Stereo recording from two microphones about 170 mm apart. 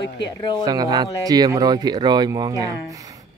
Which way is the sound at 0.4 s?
25° left (ahead or behind).